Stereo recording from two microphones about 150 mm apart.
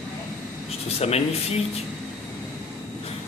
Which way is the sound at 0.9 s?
45° left (ahead or behind).